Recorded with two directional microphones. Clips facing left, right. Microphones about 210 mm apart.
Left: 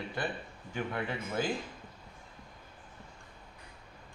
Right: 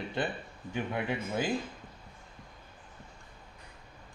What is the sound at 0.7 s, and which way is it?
Speech, 15° right (ahead or behind).